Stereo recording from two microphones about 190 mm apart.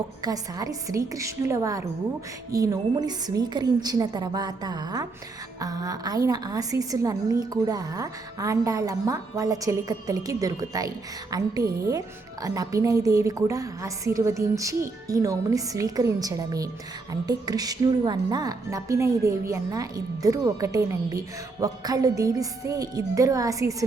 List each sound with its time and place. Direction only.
0.2 s a woman's voice: 20° right (ahead or behind)